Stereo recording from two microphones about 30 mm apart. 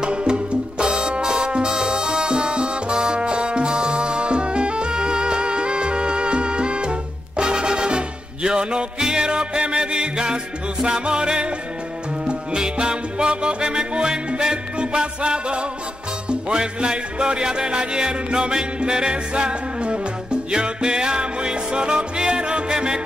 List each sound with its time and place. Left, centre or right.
0.0 s music: right